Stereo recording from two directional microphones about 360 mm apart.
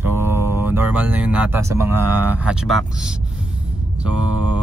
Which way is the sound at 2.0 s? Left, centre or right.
Right.